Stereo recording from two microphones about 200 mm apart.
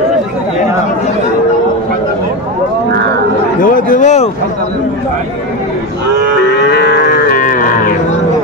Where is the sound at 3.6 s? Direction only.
45° left (ahead or behind).